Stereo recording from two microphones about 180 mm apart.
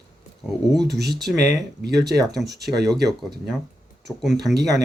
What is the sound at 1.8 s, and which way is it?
Speech, 65° right (ahead or behind).